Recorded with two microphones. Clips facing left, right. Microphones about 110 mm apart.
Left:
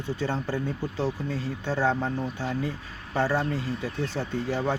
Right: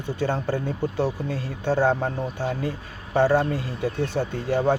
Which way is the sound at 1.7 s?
45° right (ahead or behind).